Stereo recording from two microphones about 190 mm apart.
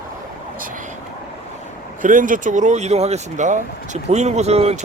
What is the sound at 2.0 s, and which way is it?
Speech, 45° right (ahead or behind).